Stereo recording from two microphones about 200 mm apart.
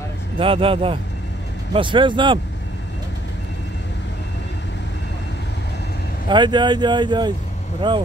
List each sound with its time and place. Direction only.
0.4 s speech: 25° right (ahead or behind)
6.2 s speech: 20° right (ahead or behind)